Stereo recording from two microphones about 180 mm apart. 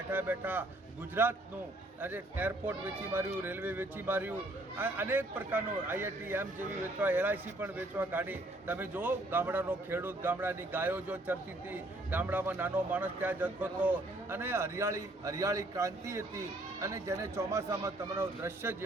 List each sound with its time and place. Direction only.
0.1 s a man's voice: 10° right (ahead or behind)